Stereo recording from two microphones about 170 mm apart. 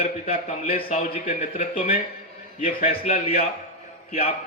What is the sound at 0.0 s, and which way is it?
A man's voice, 45° left (ahead or behind).